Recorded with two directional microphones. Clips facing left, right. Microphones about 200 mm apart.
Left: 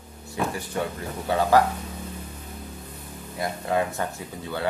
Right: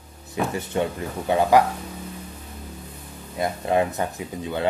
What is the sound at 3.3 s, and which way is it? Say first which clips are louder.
Speech: right 4 dB; 20° right (ahead or behind).